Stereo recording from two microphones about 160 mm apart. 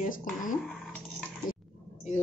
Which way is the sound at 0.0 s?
55° left (ahead or behind).